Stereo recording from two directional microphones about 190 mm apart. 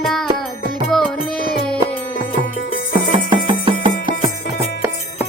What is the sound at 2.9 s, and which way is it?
Music, 25° right (ahead or behind).